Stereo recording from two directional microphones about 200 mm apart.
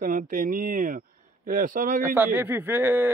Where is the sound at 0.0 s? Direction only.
40° right (ahead or behind).